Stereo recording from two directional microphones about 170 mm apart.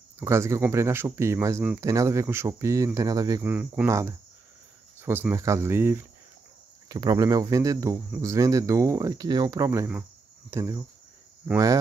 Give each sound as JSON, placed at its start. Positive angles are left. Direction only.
{"t": 0.2, "sound": "speech", "side_deg": -15}
{"t": 3.4, "sound": "speech", "side_deg": -10}